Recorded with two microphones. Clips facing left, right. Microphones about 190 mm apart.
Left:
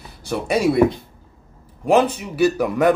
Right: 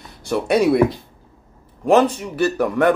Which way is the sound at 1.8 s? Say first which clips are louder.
Right 2 dB; centre (ahead or behind).